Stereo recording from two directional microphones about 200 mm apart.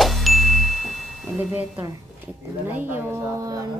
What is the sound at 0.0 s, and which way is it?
Ding, centre (ahead or behind).